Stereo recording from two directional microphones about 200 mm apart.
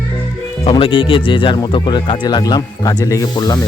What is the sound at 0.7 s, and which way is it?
Speech, 25° left (ahead or behind).